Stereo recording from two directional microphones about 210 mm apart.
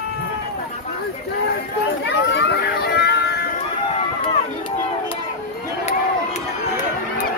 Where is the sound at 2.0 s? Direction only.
55° left (ahead or behind).